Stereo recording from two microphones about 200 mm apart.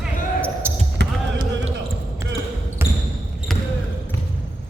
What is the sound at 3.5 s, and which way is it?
Basketball bounce, centre (ahead or behind).